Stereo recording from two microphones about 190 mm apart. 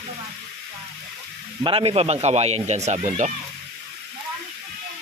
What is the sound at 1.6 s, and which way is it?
Speech, 30° right (ahead or behind).